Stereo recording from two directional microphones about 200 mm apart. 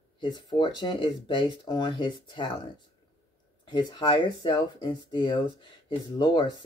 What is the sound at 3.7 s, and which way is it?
Speech, 20° left (ahead or behind).